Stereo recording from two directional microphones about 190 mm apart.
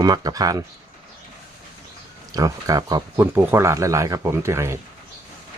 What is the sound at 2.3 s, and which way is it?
Speech, 20° right (ahead or behind).